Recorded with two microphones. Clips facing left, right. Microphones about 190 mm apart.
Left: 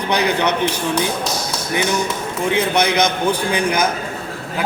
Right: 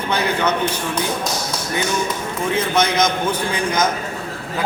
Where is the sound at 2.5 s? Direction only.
15° left (ahead or behind).